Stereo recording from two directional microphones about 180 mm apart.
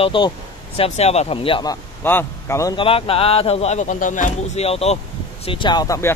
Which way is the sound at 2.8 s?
30° left (ahead or behind).